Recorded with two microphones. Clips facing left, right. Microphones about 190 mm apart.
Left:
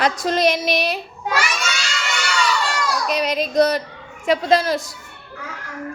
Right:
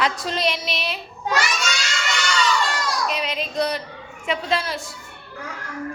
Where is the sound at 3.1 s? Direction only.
40° left (ahead or behind).